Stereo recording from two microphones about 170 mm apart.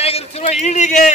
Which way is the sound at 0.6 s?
45° left (ahead or behind).